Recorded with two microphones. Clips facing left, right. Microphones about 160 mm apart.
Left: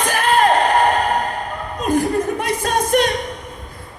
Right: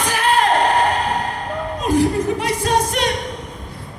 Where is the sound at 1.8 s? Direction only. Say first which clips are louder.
Right 1 dB; 55° left (ahead or behind).